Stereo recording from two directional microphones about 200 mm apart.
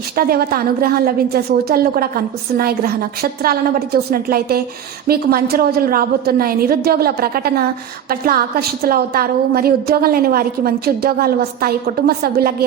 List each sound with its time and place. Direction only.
0.2 s a woman's voice: 50° right (ahead or behind)